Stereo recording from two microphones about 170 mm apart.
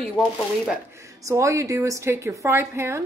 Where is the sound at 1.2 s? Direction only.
20° right (ahead or behind).